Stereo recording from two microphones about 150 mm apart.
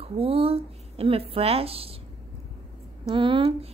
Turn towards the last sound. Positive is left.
turn(degrees=-35)  # may be behind; listen again after turning